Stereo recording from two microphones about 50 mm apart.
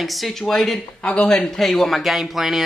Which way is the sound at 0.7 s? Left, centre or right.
Centre.